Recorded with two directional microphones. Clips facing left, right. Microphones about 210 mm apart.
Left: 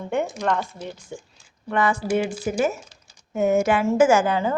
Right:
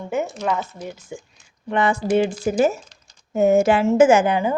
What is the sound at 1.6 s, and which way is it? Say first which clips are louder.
A woman's voice: right 2 dB; 20° right (ahead or behind).